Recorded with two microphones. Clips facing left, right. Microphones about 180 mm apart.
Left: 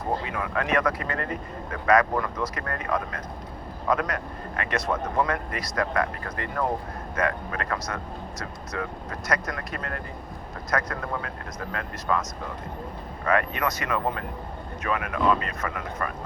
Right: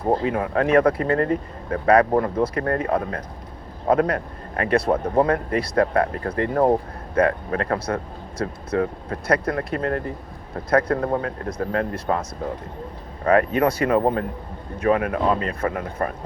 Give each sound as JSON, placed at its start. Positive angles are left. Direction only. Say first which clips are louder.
{"t": 0.3, "sound": "speech", "louder": "right 8 dB", "side_deg": -35}
{"t": 13.2, "sound": "speech", "louder": "right 7 dB", "side_deg": -35}